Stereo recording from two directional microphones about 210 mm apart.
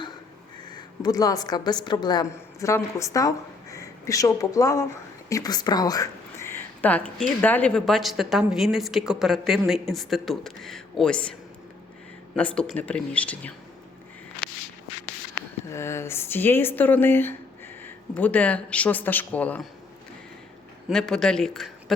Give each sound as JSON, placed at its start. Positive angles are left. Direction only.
{"t": 0.7, "sound": "a woman's voice", "side_deg": 20}
{"t": 12.4, "sound": "speech", "side_deg": 5}
{"t": 15.7, "sound": "speech", "side_deg": 10}
{"t": 20.9, "sound": "speech", "side_deg": 5}